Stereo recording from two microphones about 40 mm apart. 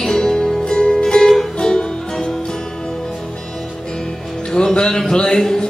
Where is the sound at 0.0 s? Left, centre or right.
Centre.